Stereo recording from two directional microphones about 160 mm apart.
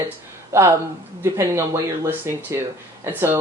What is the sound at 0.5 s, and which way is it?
Speech, 15° right (ahead or behind).